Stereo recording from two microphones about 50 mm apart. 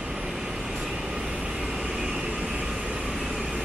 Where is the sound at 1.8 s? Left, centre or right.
Centre.